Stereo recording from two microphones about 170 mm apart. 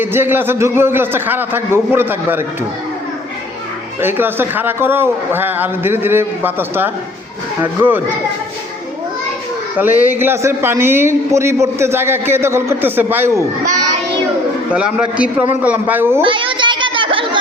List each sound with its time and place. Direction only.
0.0 s a man's voice: 10° right (ahead or behind)
4.0 s a man's voice: 10° right (ahead or behind)
9.7 s a man's voice: 10° right (ahead or behind)
14.7 s a man's voice: 5° right (ahead or behind)
16.2 s children playing: 30° right (ahead or behind)